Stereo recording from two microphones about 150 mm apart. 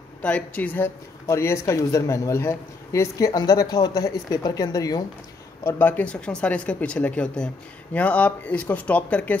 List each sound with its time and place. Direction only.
0.2 s speech: 10° left (ahead or behind)
5.6 s speech: 15° left (ahead or behind)